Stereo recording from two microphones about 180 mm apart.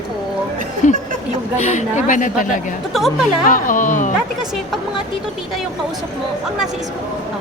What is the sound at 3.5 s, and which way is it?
Speech, 50° left (ahead or behind).